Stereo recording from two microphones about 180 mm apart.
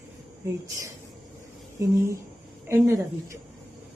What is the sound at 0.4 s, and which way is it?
Speech, 15° right (ahead or behind).